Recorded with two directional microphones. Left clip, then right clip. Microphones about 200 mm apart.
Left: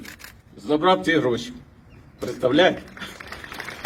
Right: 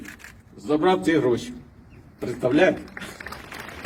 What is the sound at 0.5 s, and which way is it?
A man's voice, 20° right (ahead or behind).